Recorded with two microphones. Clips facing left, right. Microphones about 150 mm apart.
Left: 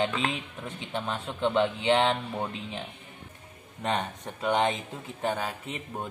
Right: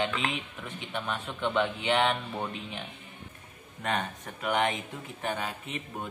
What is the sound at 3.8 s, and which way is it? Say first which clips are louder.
Speech: left 2 dB; 30° left (ahead or behind).